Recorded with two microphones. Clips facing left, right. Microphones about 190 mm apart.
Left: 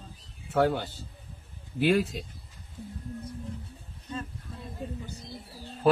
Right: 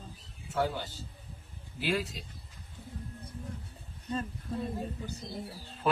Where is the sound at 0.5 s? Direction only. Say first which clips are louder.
Left 7 dB; 60° left (ahead or behind).